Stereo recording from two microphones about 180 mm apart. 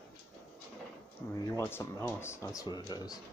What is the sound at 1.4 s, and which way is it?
Speech, 15° left (ahead or behind).